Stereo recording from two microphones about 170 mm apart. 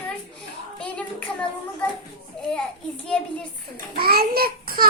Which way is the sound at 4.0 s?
65° right (ahead or behind).